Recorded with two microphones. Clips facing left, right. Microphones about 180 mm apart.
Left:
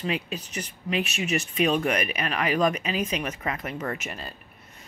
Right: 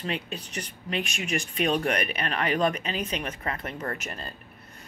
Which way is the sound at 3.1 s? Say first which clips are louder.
Left 2 dB; 35° right (ahead or behind).